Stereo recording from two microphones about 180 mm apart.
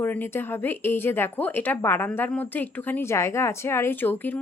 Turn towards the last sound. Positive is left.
turn(degrees=10)  # may be behind; listen again after turning